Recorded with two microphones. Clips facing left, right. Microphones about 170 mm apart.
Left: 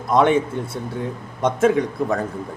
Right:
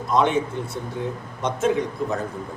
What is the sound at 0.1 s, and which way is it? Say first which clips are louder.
Speech: left 4 dB; 55° left (ahead or behind).